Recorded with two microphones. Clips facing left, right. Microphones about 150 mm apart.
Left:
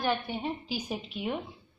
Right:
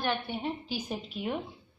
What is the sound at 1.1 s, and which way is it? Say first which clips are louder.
Speech: even; centre (ahead or behind).